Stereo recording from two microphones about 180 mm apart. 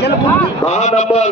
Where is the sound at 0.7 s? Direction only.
40° left (ahead or behind).